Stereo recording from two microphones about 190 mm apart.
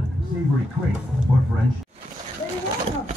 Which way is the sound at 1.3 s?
5° right (ahead or behind).